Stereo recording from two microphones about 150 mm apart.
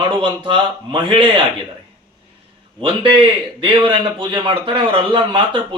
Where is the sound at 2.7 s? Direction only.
35° right (ahead or behind).